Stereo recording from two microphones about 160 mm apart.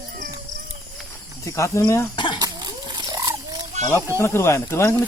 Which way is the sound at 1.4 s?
20° left (ahead or behind).